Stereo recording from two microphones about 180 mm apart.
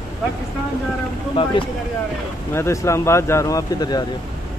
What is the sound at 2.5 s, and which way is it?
Speech, 15° left (ahead or behind).